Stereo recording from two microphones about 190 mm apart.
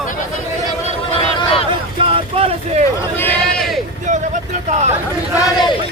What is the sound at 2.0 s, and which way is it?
Vehicle, 30° right (ahead or behind).